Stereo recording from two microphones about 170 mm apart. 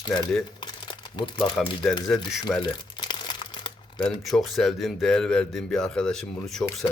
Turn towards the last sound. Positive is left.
turn(degrees=0)  # may be behind; listen again after turning